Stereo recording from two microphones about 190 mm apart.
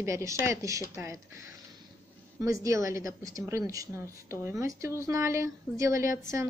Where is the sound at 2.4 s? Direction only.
15° right (ahead or behind).